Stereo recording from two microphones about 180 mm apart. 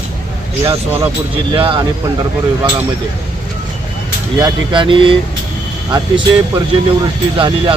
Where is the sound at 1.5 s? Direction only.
30° right (ahead or behind).